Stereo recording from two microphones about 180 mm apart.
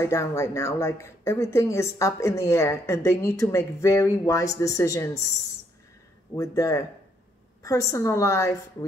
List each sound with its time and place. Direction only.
0.0 s speech: 15° left (ahead or behind)
6.3 s speech: 20° left (ahead or behind)